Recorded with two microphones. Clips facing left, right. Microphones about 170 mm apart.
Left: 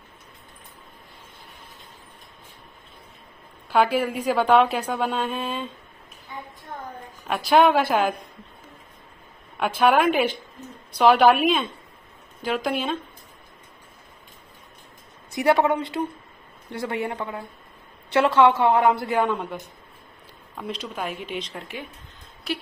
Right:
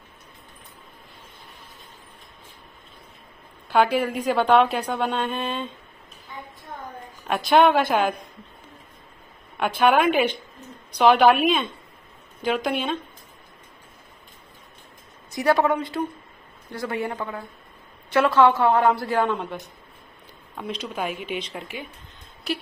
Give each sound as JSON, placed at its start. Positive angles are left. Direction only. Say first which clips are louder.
{"t": 3.6, "sound": "a woman's voice", "louder": "even", "side_deg": 0}
{"t": 7.2, "sound": "a woman's voice", "louder": "even", "side_deg": 0}
{"t": 9.6, "sound": "a woman's voice", "louder": "even", "side_deg": 0}
{"t": 15.4, "sound": "a woman's voice", "louder": "left 1 dB", "side_deg": 25}
{"t": 19.2, "sound": "a woman's voice", "louder": "even", "side_deg": 0}